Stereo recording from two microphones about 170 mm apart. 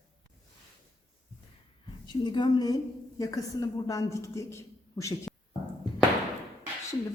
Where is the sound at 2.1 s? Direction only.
25° left (ahead or behind).